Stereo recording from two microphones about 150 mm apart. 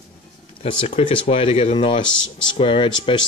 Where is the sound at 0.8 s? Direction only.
35° left (ahead or behind).